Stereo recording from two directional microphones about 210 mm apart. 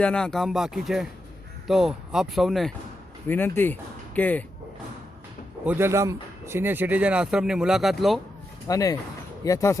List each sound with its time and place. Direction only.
0.0 s speech: 5° left (ahead or behind)
5.6 s speech: 10° right (ahead or behind)
8.6 s speech: 15° left (ahead or behind)